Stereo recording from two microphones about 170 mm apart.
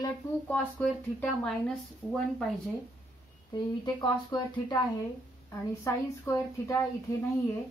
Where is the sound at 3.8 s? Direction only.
25° left (ahead or behind).